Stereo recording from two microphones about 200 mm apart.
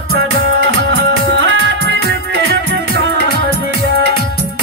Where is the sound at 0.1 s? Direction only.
65° right (ahead or behind).